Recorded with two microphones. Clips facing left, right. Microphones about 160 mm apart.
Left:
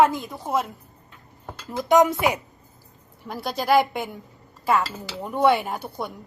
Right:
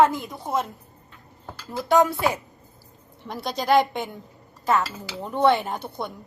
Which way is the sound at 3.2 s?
5° left (ahead or behind).